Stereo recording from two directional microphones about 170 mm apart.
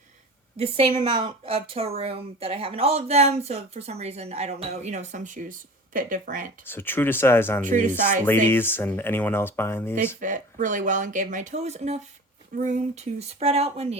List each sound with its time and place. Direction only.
0.5 s a woman's voice: 35° right (ahead or behind); by 6.5 s 50° right (ahead or behind)
6.7 s speech: 10° left (ahead or behind)
7.6 s speech: 50° right (ahead or behind)
8.4 s speech: 15° left (ahead or behind)
10.2 s a woman's voice: 50° right (ahead or behind)